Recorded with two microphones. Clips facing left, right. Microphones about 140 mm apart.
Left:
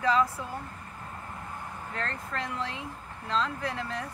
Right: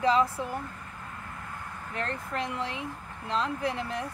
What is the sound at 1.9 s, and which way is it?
Speech, 15° right (ahead or behind).